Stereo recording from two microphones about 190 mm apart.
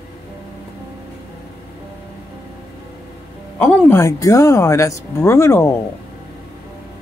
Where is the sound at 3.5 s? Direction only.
15° left (ahead or behind).